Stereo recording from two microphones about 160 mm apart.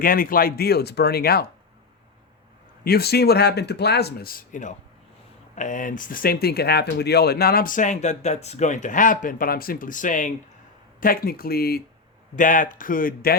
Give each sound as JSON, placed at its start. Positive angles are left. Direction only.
{"t": 0.0, "sound": "speech", "side_deg": 65}
{"t": 2.8, "sound": "speech", "side_deg": 75}
{"t": 11.0, "sound": "speech", "side_deg": 65}
{"t": 12.4, "sound": "speech", "side_deg": 55}